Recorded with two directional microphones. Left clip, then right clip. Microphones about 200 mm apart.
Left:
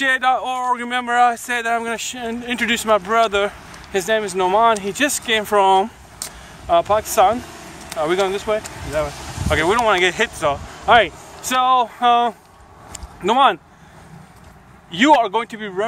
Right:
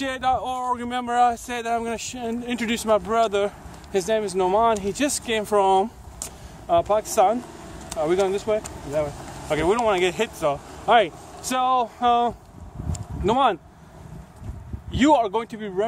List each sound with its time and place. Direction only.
0.0 s speech: 5° left (ahead or behind)
14.9 s speech: 5° left (ahead or behind)